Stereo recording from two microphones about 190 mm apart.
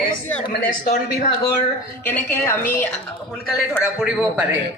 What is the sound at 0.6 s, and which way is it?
Speech, 50° left (ahead or behind).